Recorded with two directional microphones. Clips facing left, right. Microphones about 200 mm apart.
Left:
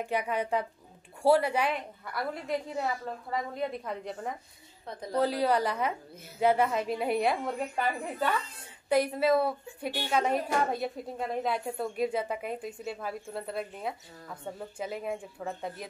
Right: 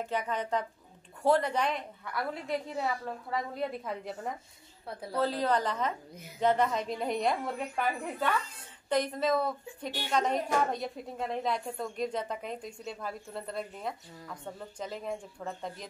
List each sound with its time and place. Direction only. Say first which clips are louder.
0.0 s a woman's voice: left 2 dB; 10° left (ahead or behind)
5.1 s a woman's voice: left 2 dB; 10° left (ahead or behind)